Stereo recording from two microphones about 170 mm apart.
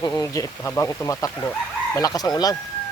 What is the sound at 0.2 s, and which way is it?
Speech, 20° left (ahead or behind).